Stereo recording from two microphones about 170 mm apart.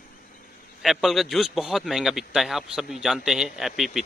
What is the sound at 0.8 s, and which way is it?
Speech, centre (ahead or behind).